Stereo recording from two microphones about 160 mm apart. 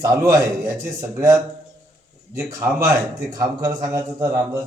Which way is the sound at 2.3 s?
20° right (ahead or behind).